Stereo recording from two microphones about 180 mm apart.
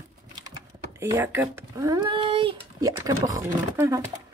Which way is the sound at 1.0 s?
15° right (ahead or behind).